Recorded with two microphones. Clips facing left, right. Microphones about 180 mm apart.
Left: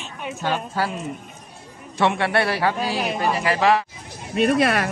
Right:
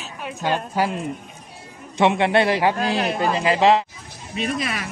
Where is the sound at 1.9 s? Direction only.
20° right (ahead or behind).